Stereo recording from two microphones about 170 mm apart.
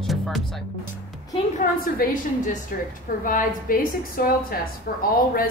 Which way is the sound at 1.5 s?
55° left (ahead or behind).